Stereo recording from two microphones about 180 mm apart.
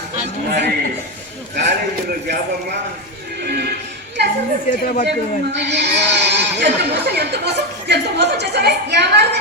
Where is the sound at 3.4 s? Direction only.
65° right (ahead or behind).